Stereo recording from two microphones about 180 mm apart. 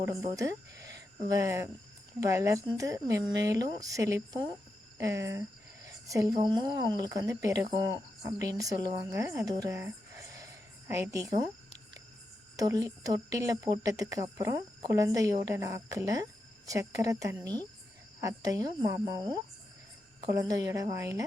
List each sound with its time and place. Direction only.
0.0 s speech: 20° right (ahead or behind)
12.5 s speech: 20° right (ahead or behind)
20.2 s speech: 20° right (ahead or behind)